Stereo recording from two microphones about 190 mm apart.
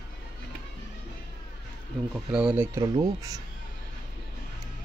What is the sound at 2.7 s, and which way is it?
Speech, 20° right (ahead or behind).